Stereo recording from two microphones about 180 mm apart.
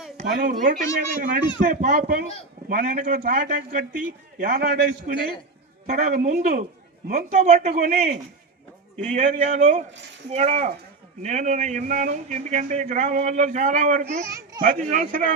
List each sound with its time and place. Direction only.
0.3 s a man's voice: 60° right (ahead or behind); by 14.2 s 45° right (ahead or behind)
14.3 s a child's voice: 15° right (ahead or behind)
14.6 s a man's voice: 45° right (ahead or behind)